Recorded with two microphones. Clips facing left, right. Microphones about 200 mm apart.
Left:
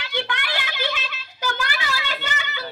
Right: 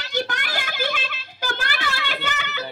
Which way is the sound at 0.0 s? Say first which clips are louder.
Right 1 dB; 40° right (ahead or behind).